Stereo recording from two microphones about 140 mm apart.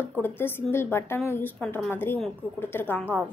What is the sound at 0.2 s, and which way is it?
A woman's voice, 15° left (ahead or behind).